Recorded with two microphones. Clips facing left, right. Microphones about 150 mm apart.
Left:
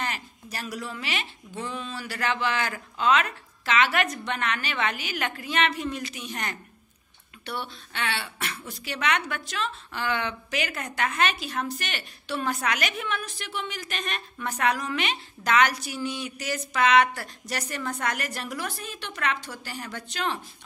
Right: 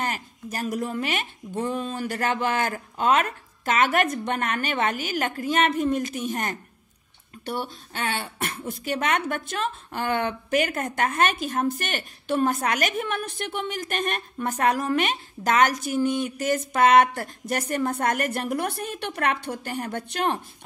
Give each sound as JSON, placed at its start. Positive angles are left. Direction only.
{"t": 0.0, "sound": "a woman's voice", "side_deg": -45}